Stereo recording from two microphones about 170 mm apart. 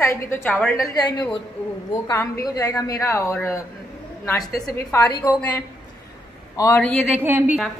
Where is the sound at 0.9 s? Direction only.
25° left (ahead or behind).